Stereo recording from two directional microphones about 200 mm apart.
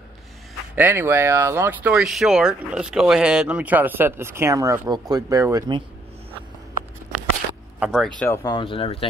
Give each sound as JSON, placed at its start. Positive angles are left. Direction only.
{"t": 0.7, "sound": "speech", "side_deg": -10}
{"t": 7.8, "sound": "speech", "side_deg": 0}
{"t": 8.2, "sound": "speech", "side_deg": 15}